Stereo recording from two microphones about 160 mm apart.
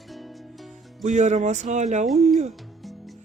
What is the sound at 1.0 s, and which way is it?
Speech, 50° right (ahead or behind).